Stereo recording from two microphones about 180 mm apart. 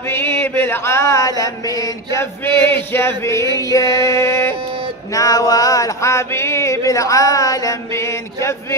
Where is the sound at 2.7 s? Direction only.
15° left (ahead or behind).